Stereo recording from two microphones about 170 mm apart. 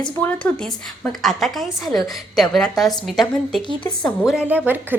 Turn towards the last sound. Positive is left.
turn(degrees=-10)  # may be behind; listen again after turning